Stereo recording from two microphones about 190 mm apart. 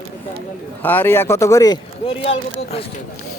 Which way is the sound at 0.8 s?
10° left (ahead or behind).